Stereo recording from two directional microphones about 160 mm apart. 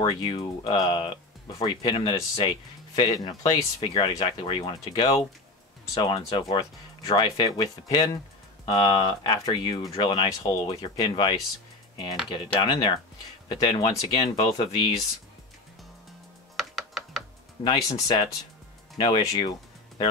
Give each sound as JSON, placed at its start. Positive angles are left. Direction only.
{"t": 0.0, "sound": "speech", "side_deg": 30}
{"t": 16.5, "sound": "typing", "side_deg": 0}
{"t": 17.6, "sound": "speech", "side_deg": 20}